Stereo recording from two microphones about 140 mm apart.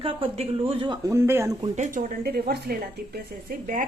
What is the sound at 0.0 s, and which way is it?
Speech, 40° right (ahead or behind).